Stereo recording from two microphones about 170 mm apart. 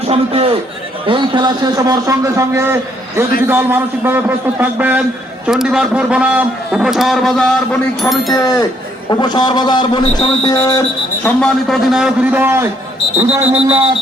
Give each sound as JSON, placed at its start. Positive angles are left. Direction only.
{"t": 0.1, "sound": "a man's voice", "side_deg": -35}
{"t": 8.3, "sound": "a man's voice", "side_deg": 20}